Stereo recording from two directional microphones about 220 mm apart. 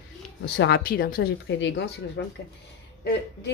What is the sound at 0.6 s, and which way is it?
Speech, 45° left (ahead or behind).